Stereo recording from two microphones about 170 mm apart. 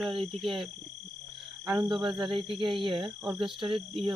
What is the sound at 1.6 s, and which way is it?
Speech, 20° right (ahead or behind).